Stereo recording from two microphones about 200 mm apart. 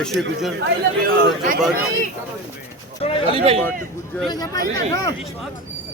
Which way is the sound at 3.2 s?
25° right (ahead or behind).